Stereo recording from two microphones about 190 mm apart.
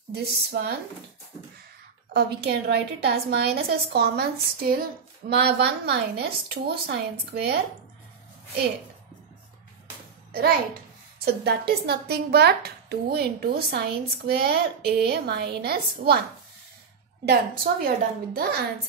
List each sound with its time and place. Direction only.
0.1 s a woman's voice: 60° right (ahead or behind)
2.1 s a woman's voice: 60° right (ahead or behind)
10.3 s a child's voice: 50° right (ahead or behind)
17.8 s a woman's voice: 50° right (ahead or behind)